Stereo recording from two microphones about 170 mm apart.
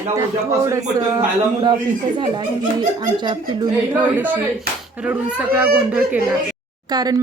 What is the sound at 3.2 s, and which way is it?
Speech, 25° right (ahead or behind).